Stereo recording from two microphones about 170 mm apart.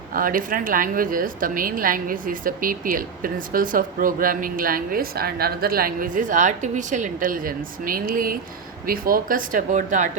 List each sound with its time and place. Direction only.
0.1 s a woman's voice: 55° right (ahead or behind)